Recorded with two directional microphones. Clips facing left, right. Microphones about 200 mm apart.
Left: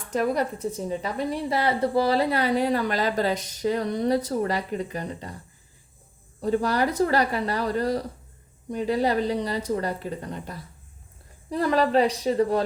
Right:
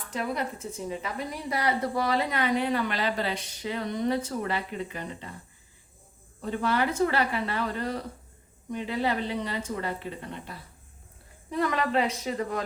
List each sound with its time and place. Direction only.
0.1 s a woman's voice: 40° left (ahead or behind)
6.4 s a woman's voice: 35° left (ahead or behind)